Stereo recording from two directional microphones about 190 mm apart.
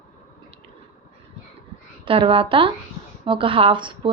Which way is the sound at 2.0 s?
25° right (ahead or behind).